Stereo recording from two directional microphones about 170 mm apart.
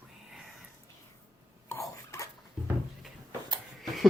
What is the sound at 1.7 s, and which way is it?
Dishes, 15° left (ahead or behind).